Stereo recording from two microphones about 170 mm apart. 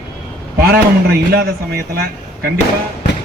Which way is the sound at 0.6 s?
70° right (ahead or behind).